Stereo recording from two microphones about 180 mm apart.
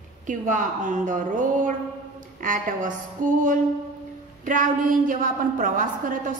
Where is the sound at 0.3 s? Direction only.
45° right (ahead or behind).